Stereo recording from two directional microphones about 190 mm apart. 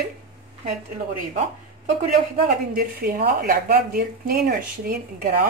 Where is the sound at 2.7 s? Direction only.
45° right (ahead or behind).